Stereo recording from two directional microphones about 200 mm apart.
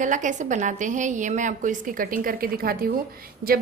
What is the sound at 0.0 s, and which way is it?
A woman's voice, 40° right (ahead or behind).